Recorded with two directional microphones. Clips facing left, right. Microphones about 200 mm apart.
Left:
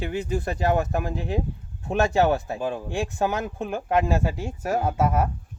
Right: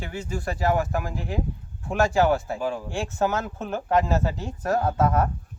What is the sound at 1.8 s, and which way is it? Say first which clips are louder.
Speech: even; 20° left (ahead or behind).